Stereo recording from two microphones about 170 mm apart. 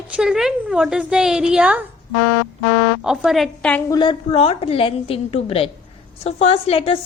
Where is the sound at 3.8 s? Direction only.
25° left (ahead or behind).